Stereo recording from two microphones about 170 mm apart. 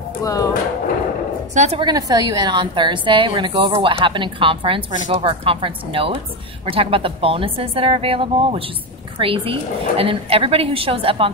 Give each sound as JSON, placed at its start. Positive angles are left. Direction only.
{"t": 0.2, "sound": "speech", "side_deg": 20}
{"t": 1.5, "sound": "a woman's voice", "side_deg": -45}
{"t": 1.8, "sound": "a woman's voice", "side_deg": -25}